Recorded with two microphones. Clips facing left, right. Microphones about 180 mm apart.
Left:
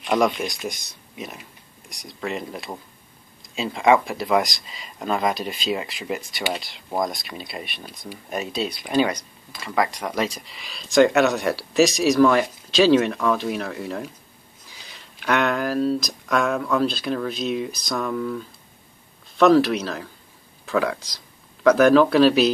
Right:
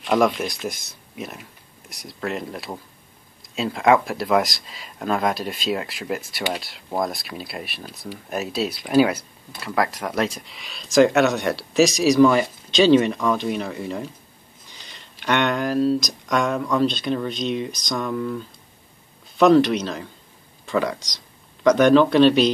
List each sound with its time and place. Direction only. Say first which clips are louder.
0.0 s speech: right 1 dB; centre (ahead or behind)